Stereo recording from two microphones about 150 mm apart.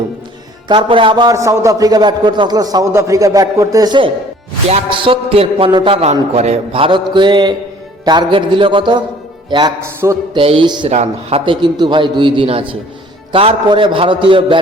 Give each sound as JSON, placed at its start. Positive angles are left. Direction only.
{"t": 0.7, "sound": "a man's voice", "side_deg": -35}
{"t": 9.8, "sound": "a man's voice", "side_deg": -20}
{"t": 10.3, "sound": "a man's voice", "side_deg": -35}
{"t": 10.8, "sound": "a man's voice", "side_deg": -45}